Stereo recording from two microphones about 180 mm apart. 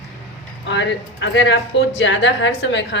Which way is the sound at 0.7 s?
80° left.